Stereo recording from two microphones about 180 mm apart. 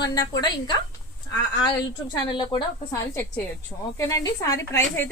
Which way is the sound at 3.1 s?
10° left (ahead or behind).